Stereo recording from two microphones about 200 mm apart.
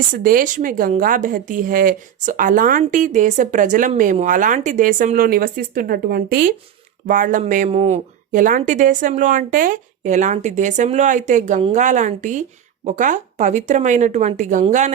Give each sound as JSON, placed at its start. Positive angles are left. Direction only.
{"t": 0.1, "sound": "a woman's voice", "side_deg": -45}